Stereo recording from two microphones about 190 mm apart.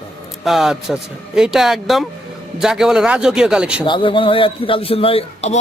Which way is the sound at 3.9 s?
25° left (ahead or behind).